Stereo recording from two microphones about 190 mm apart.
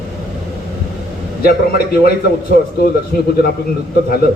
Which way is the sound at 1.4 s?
50° left (ahead or behind).